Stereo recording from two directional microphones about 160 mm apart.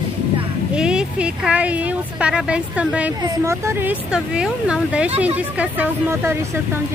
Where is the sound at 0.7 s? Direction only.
5° right (ahead or behind).